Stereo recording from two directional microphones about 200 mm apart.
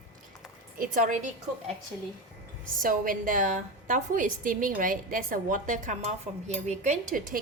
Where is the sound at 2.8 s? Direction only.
45° right (ahead or behind).